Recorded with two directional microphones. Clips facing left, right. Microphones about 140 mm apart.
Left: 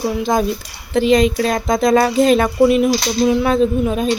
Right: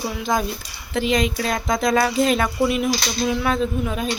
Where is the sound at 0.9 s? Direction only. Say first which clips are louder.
Left 7 dB; 35° left (ahead or behind).